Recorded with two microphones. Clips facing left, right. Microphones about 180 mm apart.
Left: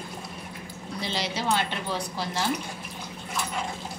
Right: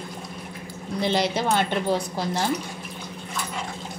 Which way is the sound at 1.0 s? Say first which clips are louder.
Right 8 dB; 55° right (ahead or behind).